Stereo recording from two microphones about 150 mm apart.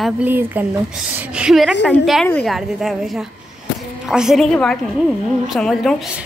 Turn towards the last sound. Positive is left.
turn(degrees=0)  # may be behind; listen again after turning